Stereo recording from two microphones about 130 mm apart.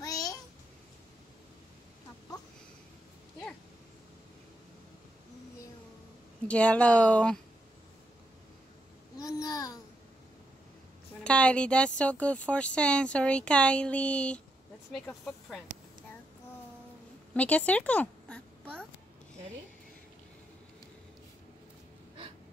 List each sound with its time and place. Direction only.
0.0 s babbling: 30° left (ahead or behind)
6.4 s speech: 10° left (ahead or behind)
9.2 s babbling: 30° left (ahead or behind)
11.2 s speech: 10° left (ahead or behind)
17.3 s speech: 10° left (ahead or behind)